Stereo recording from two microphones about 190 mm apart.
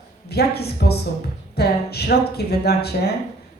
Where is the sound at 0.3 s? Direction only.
55° left (ahead or behind).